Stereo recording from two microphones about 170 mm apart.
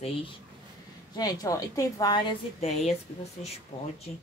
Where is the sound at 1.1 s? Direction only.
20° left (ahead or behind).